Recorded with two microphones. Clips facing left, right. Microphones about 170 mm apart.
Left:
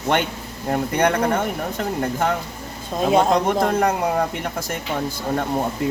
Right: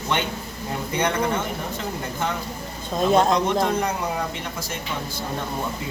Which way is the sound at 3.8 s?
55° left (ahead or behind).